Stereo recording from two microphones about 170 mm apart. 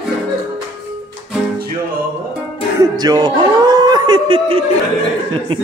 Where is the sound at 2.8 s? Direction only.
20° right (ahead or behind).